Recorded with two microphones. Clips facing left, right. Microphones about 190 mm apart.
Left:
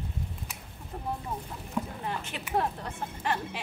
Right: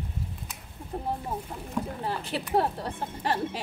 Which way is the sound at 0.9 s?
30° right (ahead or behind).